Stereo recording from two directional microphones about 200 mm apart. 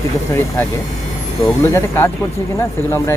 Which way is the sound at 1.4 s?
10° left (ahead or behind).